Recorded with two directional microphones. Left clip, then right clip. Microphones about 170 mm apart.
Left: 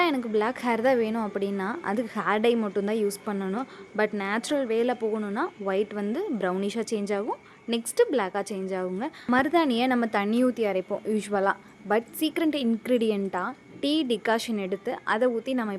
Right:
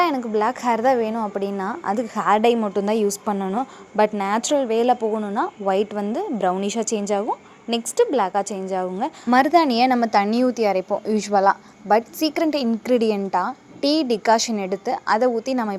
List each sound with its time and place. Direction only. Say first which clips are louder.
0.0 s a woman's voice: right 5 dB; 5° left (ahead or behind)